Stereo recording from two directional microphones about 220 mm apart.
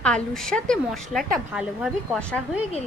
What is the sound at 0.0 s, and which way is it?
A woman's voice, 5° left (ahead or behind).